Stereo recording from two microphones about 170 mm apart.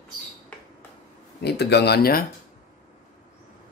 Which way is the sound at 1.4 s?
80° left.